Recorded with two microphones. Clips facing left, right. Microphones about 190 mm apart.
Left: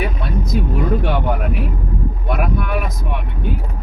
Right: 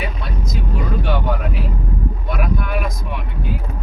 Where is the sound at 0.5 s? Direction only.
60° left (ahead or behind).